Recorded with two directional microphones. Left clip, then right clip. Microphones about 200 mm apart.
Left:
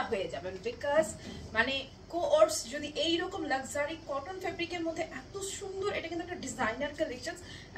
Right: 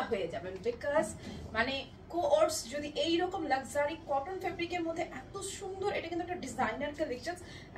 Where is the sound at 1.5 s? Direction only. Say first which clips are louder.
Left 3 dB; 15° left (ahead or behind).